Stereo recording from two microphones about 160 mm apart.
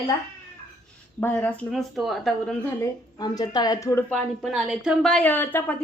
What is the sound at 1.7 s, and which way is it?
Speech, centre (ahead or behind).